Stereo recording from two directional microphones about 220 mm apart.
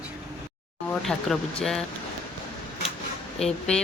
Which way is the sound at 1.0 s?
Centre (ahead or behind).